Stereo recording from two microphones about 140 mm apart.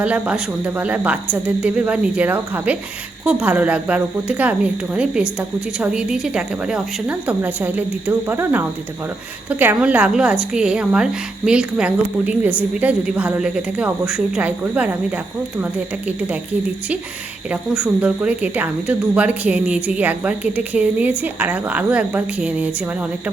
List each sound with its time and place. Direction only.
0.0 s speech: 10° right (ahead or behind)
17.5 s speech: 10° right (ahead or behind)